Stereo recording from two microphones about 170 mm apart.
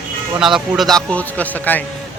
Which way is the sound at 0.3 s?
5° right (ahead or behind).